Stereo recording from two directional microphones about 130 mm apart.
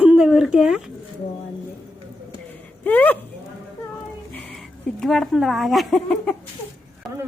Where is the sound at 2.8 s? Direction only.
10° left (ahead or behind).